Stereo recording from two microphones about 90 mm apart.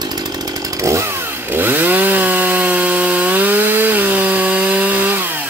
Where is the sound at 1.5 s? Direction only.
20° right (ahead or behind).